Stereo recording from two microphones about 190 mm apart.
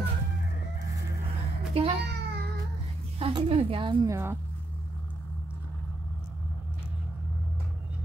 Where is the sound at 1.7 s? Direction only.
30° right (ahead or behind).